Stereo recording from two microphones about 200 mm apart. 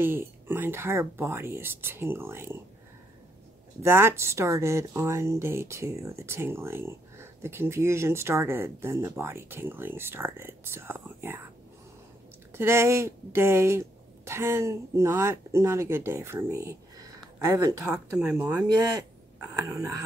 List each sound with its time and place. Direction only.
0.0 s speech: 10° right (ahead or behind)
3.8 s speech: 10° right (ahead or behind)
12.5 s speech: 10° right (ahead or behind)
18.1 s speech: 5° right (ahead or behind)